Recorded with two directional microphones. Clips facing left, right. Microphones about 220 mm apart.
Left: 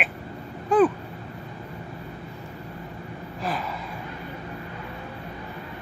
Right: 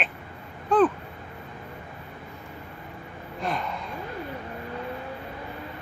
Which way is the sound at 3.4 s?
5° left (ahead or behind).